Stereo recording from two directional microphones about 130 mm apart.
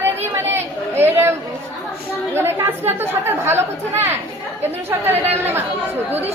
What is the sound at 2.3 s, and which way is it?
A woman's voice, 15° right (ahead or behind).